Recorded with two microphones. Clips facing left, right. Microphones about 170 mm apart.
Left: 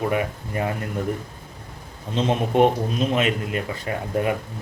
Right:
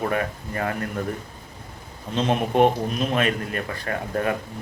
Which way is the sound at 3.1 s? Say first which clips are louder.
Left 1 dB; 20° left (ahead or behind).